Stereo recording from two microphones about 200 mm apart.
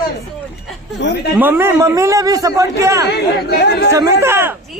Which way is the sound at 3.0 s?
55° left (ahead or behind).